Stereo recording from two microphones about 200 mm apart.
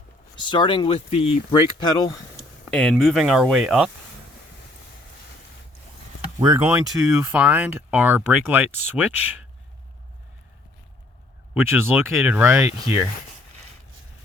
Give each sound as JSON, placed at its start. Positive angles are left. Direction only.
{"t": 0.4, "sound": "speech", "side_deg": 25}
{"t": 2.6, "sound": "speech", "side_deg": 5}
{"t": 6.4, "sound": "speech", "side_deg": -15}
{"t": 11.5, "sound": "speech", "side_deg": -10}